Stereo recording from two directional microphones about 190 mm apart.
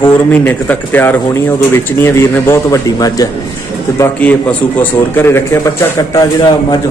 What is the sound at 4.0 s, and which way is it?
Speech, 10° left (ahead or behind).